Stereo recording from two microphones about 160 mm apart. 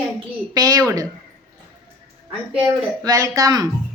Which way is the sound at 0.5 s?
20° right (ahead or behind).